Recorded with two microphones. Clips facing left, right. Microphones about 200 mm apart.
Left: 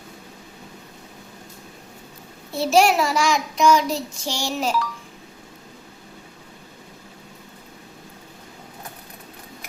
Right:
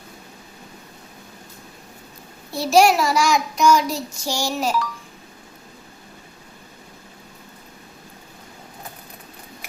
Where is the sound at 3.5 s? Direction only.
Centre (ahead or behind).